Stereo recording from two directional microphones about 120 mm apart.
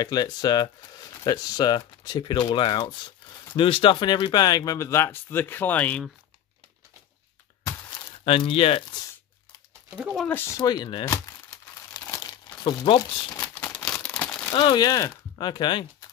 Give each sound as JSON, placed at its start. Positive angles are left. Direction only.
{"t": 0.0, "sound": "speech", "side_deg": 35}
{"t": 8.3, "sound": "speech", "side_deg": 50}
{"t": 9.9, "sound": "speech", "side_deg": -5}
{"t": 10.6, "sound": "speech", "side_deg": 35}
{"t": 11.9, "sound": "crumpling", "side_deg": 30}
{"t": 12.6, "sound": "speech", "side_deg": 40}
{"t": 13.6, "sound": "crumpling", "side_deg": 10}
{"t": 14.5, "sound": "speech", "side_deg": 45}